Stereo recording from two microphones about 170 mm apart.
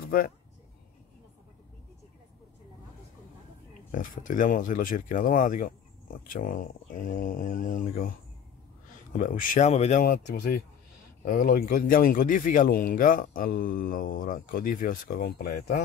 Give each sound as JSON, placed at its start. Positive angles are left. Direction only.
{"t": 3.9, "sound": "speech", "side_deg": 50}
{"t": 9.1, "sound": "speech", "side_deg": 50}
{"t": 10.0, "sound": "speech", "side_deg": 55}